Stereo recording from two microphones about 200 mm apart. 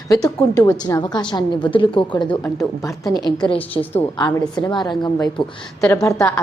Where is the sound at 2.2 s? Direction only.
15° left (ahead or behind).